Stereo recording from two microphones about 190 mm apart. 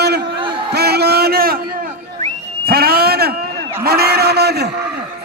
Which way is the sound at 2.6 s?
50° right (ahead or behind).